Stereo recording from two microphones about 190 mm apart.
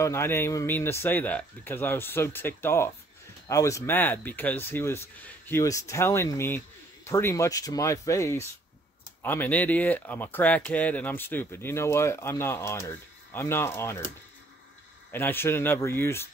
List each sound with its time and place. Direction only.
0.0 s speech: 15° left (ahead or behind)
15.1 s speech: 10° left (ahead or behind)